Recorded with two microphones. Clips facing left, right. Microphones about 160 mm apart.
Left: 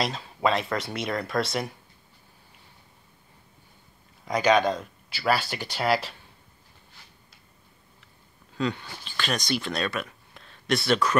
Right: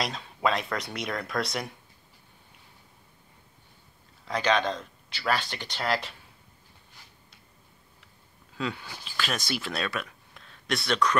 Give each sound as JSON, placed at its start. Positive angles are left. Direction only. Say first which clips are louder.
{"t": 0.0, "sound": "speech", "louder": "left 2 dB", "side_deg": 0}
{"t": 4.3, "sound": "speech", "louder": "left 4 dB", "side_deg": 10}
{"t": 8.5, "sound": "speech", "louder": "left 4 dB", "side_deg": -5}